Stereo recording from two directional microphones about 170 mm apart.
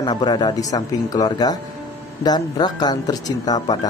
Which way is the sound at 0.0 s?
25° left (ahead or behind).